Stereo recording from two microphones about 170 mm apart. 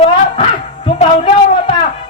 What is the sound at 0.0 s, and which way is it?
Dog, 30° left (ahead or behind).